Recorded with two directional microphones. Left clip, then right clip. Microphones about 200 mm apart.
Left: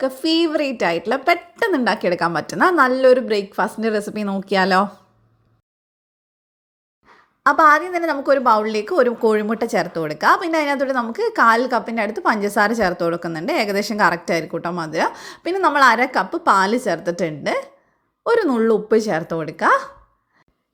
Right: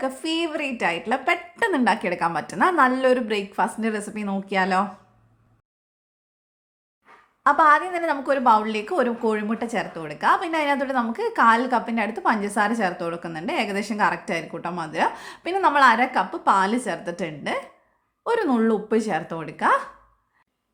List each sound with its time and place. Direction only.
0.0 s a woman's voice: 20° left (ahead or behind)
7.4 s a woman's voice: 20° left (ahead or behind)